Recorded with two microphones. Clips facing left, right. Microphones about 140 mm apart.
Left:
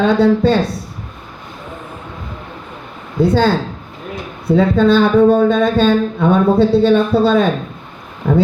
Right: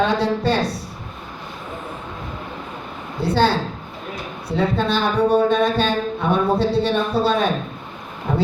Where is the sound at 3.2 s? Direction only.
45° left (ahead or behind).